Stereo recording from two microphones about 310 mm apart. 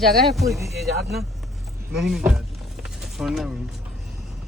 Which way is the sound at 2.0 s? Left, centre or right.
Centre.